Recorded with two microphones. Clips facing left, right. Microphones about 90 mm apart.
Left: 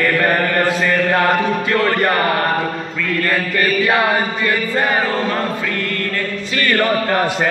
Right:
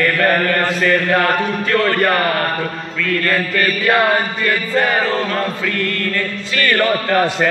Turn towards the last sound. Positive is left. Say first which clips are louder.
# right 1 dB
turn(degrees=20)  # may be behind; listen again after turning